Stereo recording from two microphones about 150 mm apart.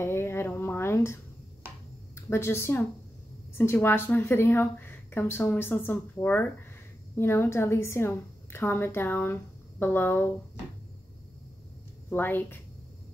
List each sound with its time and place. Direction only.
0.0 s a sound: 15° left (ahead or behind)
2.2 s a woman's voice: 15° left (ahead or behind)
12.1 s a woman's voice: 15° left (ahead or behind)